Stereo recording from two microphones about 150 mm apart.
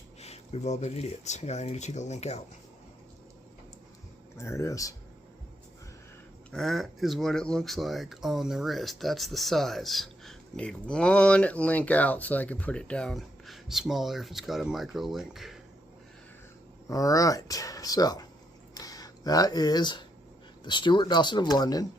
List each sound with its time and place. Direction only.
0.2 s speech: 45° left (ahead or behind)
4.4 s speech: 20° left (ahead or behind)
6.5 s speech: centre (ahead or behind)
16.9 s speech: 25° left (ahead or behind)
18.7 s a sound: 25° left (ahead or behind)
20.7 s speech: 30° left (ahead or behind)